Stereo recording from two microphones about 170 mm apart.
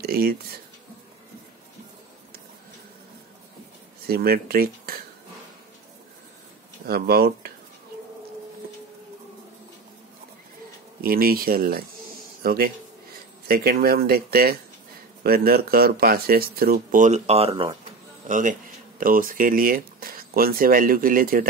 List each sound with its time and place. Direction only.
0.0 s speech: 65° right (ahead or behind)
4.1 s speech: 65° right (ahead or behind)
6.9 s speech: 65° right (ahead or behind)
11.0 s speech: 60° right (ahead or behind); by 17.6 s 35° right (ahead or behind)
18.3 s speech: 50° right (ahead or behind)